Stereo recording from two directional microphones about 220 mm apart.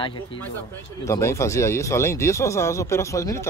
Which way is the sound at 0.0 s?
25° left (ahead or behind).